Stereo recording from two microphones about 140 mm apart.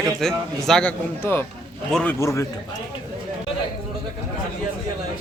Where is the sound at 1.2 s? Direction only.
15° left (ahead or behind).